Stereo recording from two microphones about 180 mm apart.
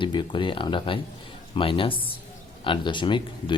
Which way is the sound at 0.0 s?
25° left (ahead or behind).